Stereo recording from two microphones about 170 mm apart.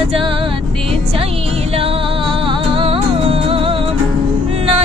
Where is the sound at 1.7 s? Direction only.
35° right (ahead or behind).